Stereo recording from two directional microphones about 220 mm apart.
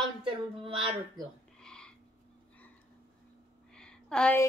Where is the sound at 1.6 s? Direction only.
5° left (ahead or behind).